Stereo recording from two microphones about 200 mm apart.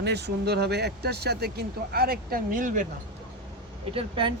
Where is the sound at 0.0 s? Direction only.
55° right (ahead or behind).